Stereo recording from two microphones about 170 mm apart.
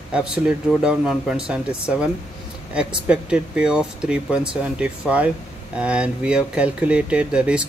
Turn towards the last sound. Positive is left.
turn(degrees=-5)  # may be behind; listen again after turning